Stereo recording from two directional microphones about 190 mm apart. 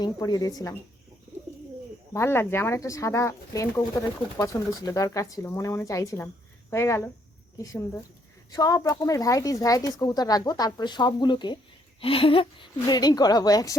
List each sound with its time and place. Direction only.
0.0 s a woman's voice: 20° left (ahead or behind)
2.1 s speech: 15° left (ahead or behind)
8.5 s a woman's voice: 20° left (ahead or behind)